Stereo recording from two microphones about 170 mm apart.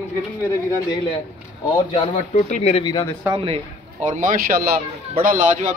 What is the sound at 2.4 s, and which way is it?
Speech, 45° left (ahead or behind).